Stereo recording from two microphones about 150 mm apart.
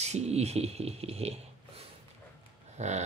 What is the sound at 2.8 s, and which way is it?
Speech, 50° right (ahead or behind).